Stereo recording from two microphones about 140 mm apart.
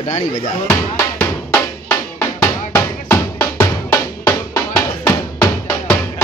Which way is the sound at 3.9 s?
25° left (ahead or behind).